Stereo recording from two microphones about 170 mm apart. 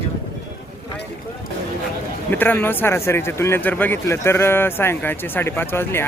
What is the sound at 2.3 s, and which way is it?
Speech, 10° left (ahead or behind).